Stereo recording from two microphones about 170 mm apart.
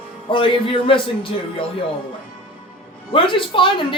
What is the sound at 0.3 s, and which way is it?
Speech, 30° left (ahead or behind).